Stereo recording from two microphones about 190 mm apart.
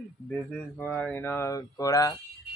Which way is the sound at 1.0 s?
10° left (ahead or behind).